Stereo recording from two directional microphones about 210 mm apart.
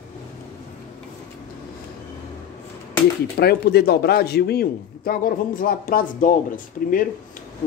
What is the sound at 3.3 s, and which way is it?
Speech, 50° left (ahead or behind).